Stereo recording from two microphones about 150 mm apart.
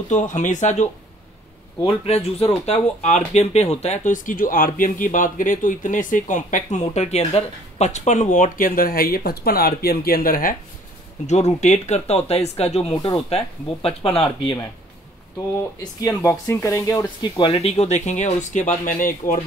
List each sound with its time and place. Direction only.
0.1 s speech: 60° left (ahead or behind)
1.8 s speech: 35° left (ahead or behind); by 10.5 s 75° left (ahead or behind)
11.2 s speech: 50° left (ahead or behind)
13.8 s speech: 40° left (ahead or behind)
15.8 s speech: 25° left (ahead or behind)
17.5 s speech: 45° left (ahead or behind); by 19.3 s 70° left (ahead or behind)